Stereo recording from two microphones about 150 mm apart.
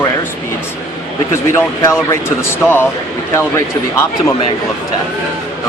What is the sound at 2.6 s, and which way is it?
Speech, 15° left (ahead or behind).